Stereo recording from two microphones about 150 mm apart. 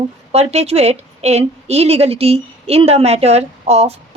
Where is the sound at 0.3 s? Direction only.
45° right (ahead or behind).